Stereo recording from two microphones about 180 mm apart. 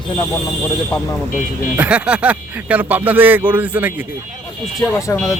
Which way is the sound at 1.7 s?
5° right (ahead or behind).